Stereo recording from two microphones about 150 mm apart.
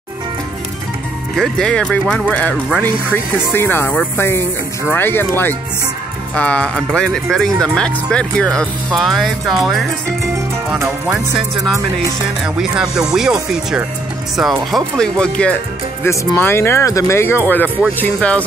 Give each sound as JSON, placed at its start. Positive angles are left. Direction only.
{"t": 1.3, "sound": "speech", "side_deg": 5}
{"t": 11.6, "sound": "music", "side_deg": -20}
{"t": 12.9, "sound": "speech", "side_deg": -5}
{"t": 16.0, "sound": "speech", "side_deg": 15}